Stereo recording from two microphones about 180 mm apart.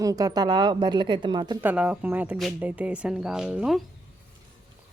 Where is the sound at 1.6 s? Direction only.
10° right (ahead or behind).